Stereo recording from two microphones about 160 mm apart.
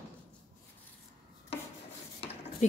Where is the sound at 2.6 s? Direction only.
45° left (ahead or behind).